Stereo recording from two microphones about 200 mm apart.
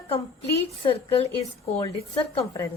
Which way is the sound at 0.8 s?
30° left (ahead or behind).